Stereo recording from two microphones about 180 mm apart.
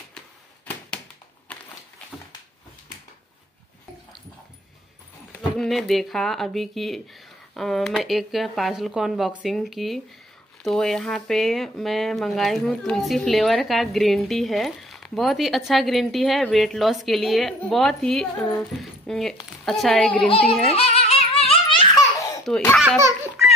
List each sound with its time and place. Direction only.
0.7 s a sound: 5° left (ahead or behind)
5.6 s speech: centre (ahead or behind)
20.7 s baby laughter: 35° left (ahead or behind)
22.4 s speech: centre (ahead or behind)
22.9 s speech: 15° right (ahead or behind)